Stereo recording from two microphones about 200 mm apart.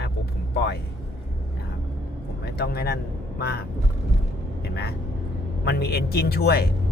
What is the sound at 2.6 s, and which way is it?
Speech, 50° left (ahead or behind).